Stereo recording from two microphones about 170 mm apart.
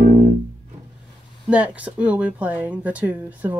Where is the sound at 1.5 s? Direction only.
10° right (ahead or behind).